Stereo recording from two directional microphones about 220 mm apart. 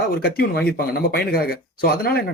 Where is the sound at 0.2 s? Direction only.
45° left (ahead or behind).